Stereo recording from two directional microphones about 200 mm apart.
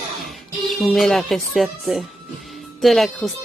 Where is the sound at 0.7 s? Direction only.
Centre (ahead or behind).